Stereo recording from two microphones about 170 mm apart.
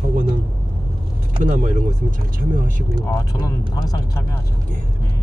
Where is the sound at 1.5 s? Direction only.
45° right (ahead or behind).